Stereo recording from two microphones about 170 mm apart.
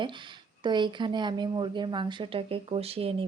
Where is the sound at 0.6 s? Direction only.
25° right (ahead or behind).